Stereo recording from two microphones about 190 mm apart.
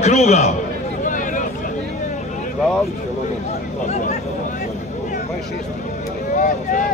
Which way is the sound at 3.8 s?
40° left (ahead or behind).